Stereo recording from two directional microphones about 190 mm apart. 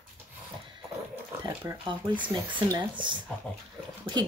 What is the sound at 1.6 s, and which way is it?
Speech, 25° right (ahead or behind).